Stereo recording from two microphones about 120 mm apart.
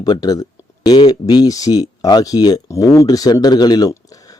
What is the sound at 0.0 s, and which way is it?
Speech, 35° left (ahead or behind).